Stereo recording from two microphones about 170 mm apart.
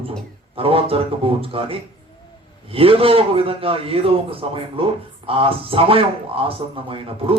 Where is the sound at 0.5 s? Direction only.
35° right (ahead or behind).